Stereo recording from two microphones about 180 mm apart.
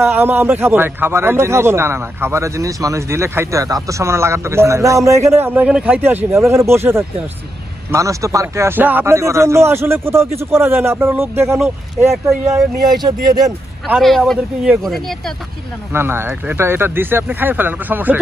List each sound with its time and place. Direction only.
0.0 s a man's voice: 10° right (ahead or behind)
13.8 s speech: centre (ahead or behind)
15.9 s a man's voice: 15° right (ahead or behind)